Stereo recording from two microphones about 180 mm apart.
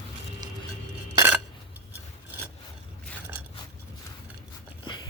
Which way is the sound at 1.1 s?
15° right (ahead or behind).